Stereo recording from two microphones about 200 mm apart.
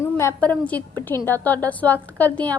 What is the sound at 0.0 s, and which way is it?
A woman's voice, 15° left (ahead or behind).